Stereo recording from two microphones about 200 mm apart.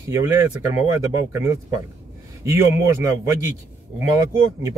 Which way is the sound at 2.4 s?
15° right (ahead or behind).